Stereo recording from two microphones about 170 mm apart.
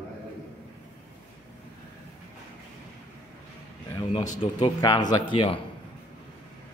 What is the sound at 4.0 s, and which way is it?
Speech, 35° left (ahead or behind).